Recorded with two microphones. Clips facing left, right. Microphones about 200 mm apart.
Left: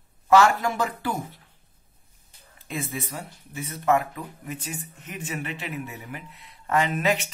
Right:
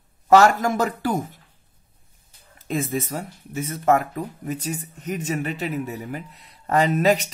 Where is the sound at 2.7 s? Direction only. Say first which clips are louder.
Right 7 dB; 45° right (ahead or behind).